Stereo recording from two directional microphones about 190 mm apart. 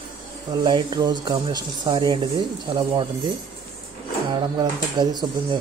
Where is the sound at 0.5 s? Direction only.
20° right (ahead or behind).